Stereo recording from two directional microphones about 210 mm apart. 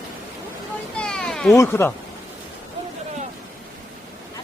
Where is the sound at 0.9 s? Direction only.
5° left (ahead or behind).